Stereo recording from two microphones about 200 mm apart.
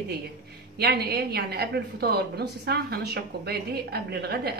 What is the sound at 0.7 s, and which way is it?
Speech, 50° right (ahead or behind).